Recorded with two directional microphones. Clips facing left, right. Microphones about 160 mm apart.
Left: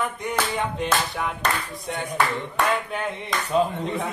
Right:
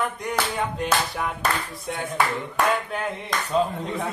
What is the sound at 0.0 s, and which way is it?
Clapping, centre (ahead or behind).